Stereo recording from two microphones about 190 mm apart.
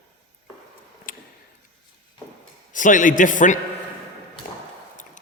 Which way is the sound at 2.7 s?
45° left (ahead or behind).